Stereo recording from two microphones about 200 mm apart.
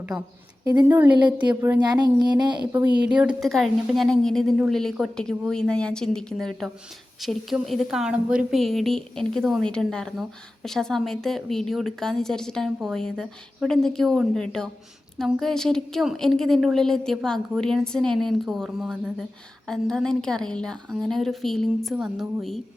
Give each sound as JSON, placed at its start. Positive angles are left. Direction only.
{"t": 0.1, "sound": "a woman's voice", "side_deg": 0}
{"t": 0.6, "sound": "a woman's voice", "side_deg": -15}
{"t": 3.2, "sound": "a woman's voice", "side_deg": -5}